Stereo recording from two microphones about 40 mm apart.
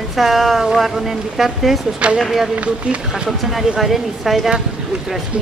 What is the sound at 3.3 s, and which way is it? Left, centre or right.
Speech, centre.